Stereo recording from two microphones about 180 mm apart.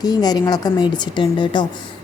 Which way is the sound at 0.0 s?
20° left (ahead or behind).